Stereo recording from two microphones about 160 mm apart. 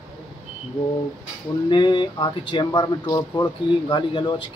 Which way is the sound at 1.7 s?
30° left (ahead or behind).